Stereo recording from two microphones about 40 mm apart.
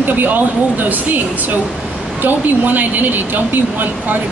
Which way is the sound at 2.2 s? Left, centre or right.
Right.